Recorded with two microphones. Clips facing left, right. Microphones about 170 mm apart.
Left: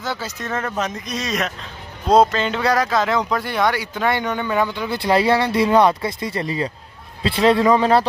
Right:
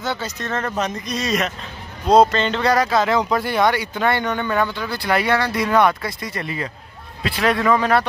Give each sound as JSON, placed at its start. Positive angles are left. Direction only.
{"t": 0.0, "sound": "speech", "side_deg": 5}
{"t": 4.8, "sound": "speech", "side_deg": 25}